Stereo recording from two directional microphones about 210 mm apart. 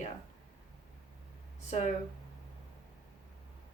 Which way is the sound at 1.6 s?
30° left (ahead or behind).